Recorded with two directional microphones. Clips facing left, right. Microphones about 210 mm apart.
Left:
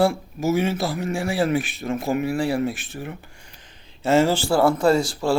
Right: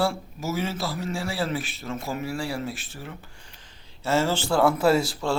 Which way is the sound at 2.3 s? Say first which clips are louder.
Left 7 dB; 20° left (ahead or behind).